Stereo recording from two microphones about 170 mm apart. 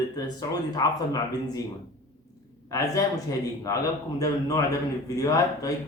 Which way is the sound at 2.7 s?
20° left (ahead or behind).